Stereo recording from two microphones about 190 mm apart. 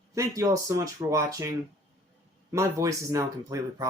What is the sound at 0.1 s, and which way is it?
Speech, 15° right (ahead or behind).